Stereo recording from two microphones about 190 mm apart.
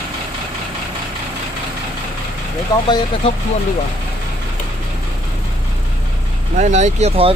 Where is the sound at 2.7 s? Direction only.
20° left (ahead or behind).